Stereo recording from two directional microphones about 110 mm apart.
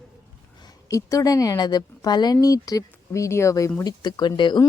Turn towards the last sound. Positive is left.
turn(degrees=45)  # may be behind; listen again after turning